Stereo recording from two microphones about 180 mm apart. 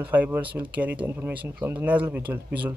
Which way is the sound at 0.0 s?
10° right (ahead or behind).